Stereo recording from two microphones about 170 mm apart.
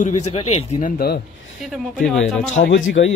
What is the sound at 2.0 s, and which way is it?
Speech, centre (ahead or behind).